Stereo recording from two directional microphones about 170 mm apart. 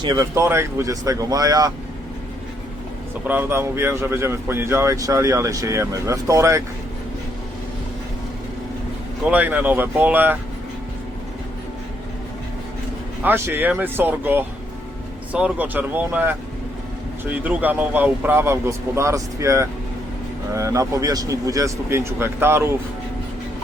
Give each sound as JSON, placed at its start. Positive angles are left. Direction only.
{"t": 0.0, "sound": "speech", "side_deg": -20}
{"t": 3.2, "sound": "speech", "side_deg": -10}
{"t": 9.2, "sound": "speech", "side_deg": -10}
{"t": 13.2, "sound": "speech", "side_deg": -15}